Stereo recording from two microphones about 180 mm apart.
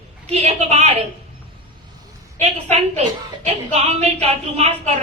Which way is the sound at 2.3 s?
35° right (ahead or behind).